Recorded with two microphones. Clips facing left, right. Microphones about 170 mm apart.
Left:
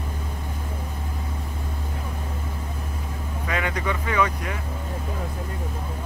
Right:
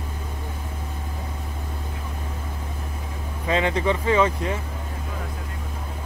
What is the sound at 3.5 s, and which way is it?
Speech, 25° right (ahead or behind).